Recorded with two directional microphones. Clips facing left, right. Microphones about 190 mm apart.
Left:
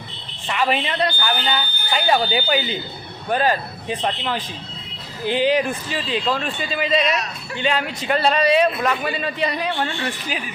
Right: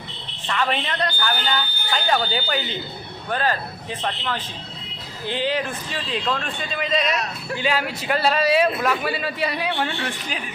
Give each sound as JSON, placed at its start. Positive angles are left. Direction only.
{"t": 0.4, "sound": "speech", "side_deg": 10}
{"t": 5.9, "sound": "a man's voice", "side_deg": 5}